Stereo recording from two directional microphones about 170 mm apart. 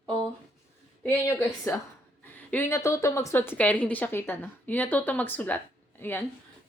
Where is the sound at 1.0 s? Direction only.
10° left (ahead or behind).